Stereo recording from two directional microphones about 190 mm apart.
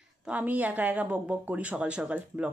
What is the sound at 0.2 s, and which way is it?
Speech, 5° right (ahead or behind).